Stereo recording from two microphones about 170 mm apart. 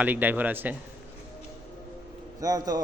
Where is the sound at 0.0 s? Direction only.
10° right (ahead or behind).